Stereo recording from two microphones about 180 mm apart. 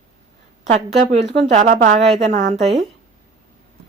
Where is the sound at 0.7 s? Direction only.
40° right (ahead or behind).